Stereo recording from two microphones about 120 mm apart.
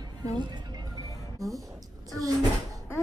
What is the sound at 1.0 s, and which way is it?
Music, 30° left (ahead or behind).